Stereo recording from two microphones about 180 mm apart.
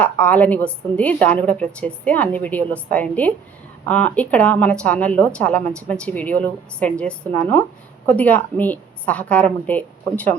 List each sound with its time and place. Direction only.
0.0 s a woman's voice: 10° left (ahead or behind)